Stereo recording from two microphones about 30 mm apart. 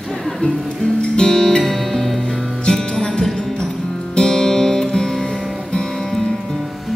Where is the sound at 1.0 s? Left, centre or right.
Left.